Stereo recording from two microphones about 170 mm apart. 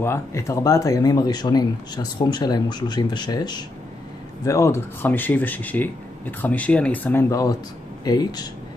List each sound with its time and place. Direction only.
0.0 s speech: 15° left (ahead or behind)